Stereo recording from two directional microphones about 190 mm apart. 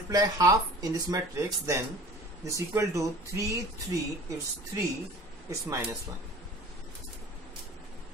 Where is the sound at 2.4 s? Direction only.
15° right (ahead or behind).